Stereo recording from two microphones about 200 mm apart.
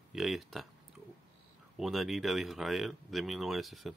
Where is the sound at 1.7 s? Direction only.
Centre (ahead or behind).